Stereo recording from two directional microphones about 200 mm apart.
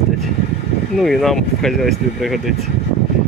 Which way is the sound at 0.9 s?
Centre (ahead or behind).